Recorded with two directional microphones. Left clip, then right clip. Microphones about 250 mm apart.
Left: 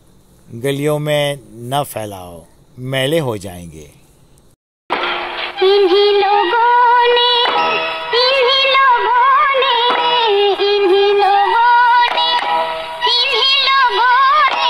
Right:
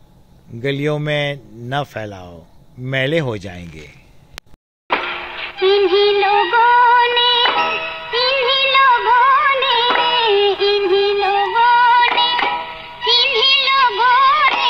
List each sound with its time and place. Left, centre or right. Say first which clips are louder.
0.6 s speech: left 3 dB; centre
4.8 s synthetic singing: left 2 dB; left